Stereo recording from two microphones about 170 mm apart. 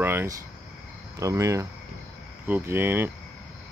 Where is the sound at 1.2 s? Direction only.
20° right (ahead or behind).